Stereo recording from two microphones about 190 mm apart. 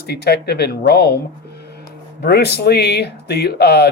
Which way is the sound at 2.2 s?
55° left (ahead or behind).